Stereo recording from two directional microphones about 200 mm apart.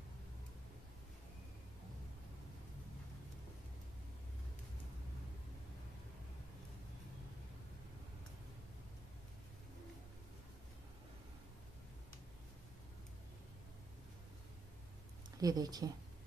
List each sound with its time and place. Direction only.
15.3 s speech: 20° right (ahead or behind)